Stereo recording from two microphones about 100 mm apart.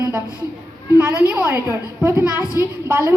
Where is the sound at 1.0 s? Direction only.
15° right (ahead or behind).